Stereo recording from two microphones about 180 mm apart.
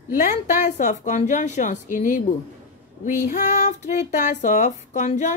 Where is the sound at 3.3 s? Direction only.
55° left (ahead or behind).